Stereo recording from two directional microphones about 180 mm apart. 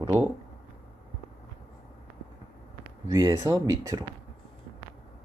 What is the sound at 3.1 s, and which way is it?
Speech, 20° right (ahead or behind).